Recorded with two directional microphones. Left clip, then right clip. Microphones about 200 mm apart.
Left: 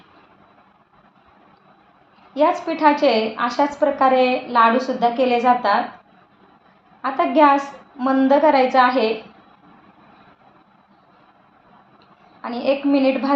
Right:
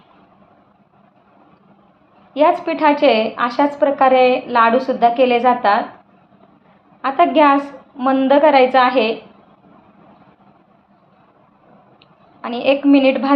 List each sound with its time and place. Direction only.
2.6 s a woman's voice: 20° right (ahead or behind)
7.0 s a woman's voice: 20° right (ahead or behind)
12.4 s a woman's voice: 25° right (ahead or behind)